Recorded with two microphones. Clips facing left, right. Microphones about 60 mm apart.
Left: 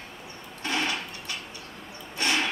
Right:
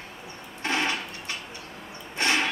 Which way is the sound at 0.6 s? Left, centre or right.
Right.